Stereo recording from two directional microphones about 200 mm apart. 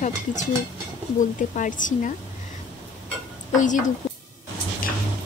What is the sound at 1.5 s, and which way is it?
Speech, 40° left (ahead or behind).